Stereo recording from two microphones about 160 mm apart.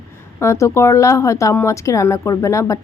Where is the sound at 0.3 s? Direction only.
20° left (ahead or behind).